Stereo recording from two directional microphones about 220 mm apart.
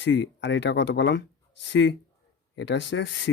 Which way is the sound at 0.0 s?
55° left (ahead or behind).